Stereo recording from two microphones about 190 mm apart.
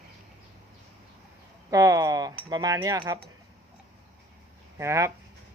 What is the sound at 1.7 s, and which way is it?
Speech, 20° right (ahead or behind).